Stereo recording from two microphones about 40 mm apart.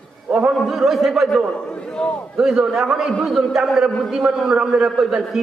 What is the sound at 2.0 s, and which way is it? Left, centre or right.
Speech, centre.